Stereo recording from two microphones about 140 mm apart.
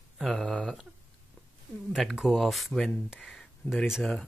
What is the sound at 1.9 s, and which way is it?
Speech, centre (ahead or behind).